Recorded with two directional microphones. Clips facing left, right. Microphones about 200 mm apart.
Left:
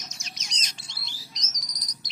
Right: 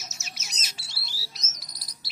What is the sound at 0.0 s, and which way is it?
Bird, 5° right (ahead or behind).